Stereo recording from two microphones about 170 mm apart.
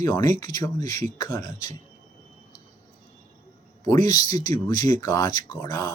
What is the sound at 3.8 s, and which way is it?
Speech, 20° left (ahead or behind).